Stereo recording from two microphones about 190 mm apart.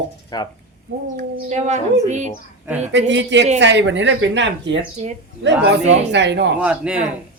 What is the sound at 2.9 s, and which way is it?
Speech, 70° right (ahead or behind).